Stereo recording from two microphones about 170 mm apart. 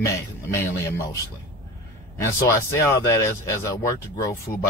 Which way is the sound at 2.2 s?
15° left (ahead or behind).